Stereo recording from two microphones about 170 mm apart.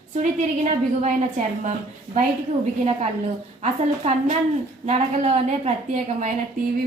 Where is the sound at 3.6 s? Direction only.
40° right (ahead or behind).